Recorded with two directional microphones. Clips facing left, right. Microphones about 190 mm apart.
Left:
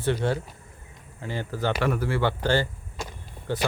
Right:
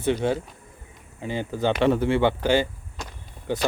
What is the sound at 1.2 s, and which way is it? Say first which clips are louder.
Speech: right 3 dB; 15° right (ahead or behind).